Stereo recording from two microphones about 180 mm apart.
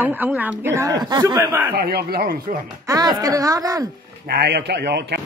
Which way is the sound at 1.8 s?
60° right (ahead or behind).